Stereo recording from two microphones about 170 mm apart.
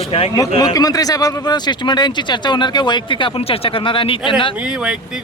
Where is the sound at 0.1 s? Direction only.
35° left (ahead or behind).